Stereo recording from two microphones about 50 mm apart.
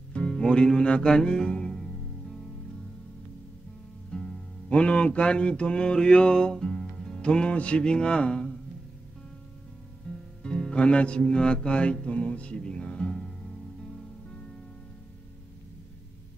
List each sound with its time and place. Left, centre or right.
0.1 s music: left
4.1 s music: centre
4.6 s mantra: left
7.5 s music: left
10.1 s music: left